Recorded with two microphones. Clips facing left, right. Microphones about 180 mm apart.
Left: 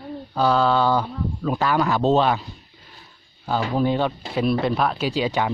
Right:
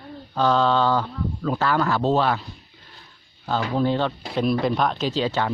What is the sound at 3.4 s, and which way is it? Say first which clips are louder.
Speech: left 1 dB; 10° left (ahead or behind).